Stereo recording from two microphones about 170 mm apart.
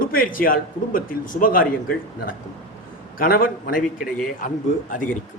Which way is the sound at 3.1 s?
60° left (ahead or behind).